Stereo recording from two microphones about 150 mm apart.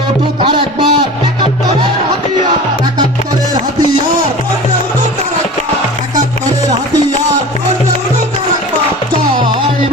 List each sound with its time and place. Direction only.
0.4 s a man's voice: 35° right (ahead or behind)